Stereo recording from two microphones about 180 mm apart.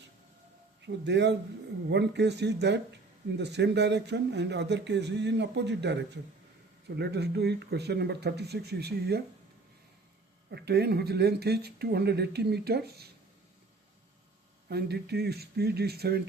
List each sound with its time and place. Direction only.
1.0 s speech: 70° right (ahead or behind)
10.5 s speech: 65° right (ahead or behind)
14.7 s speech: 65° right (ahead or behind)